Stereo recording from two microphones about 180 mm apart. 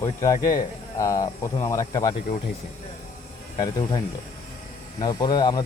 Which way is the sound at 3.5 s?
25° left (ahead or behind).